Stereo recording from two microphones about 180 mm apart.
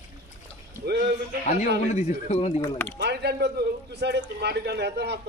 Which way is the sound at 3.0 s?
65° right (ahead or behind).